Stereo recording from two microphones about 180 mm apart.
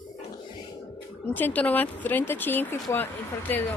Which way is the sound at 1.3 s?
10° left (ahead or behind).